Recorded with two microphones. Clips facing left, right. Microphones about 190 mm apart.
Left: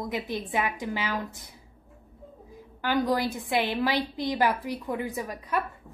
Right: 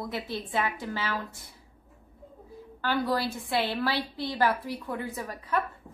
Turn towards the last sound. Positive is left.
turn(degrees=15)  # may be behind; listen again after turning